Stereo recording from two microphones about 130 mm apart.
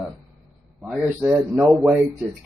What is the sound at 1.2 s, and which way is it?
Speech, 5° right (ahead or behind).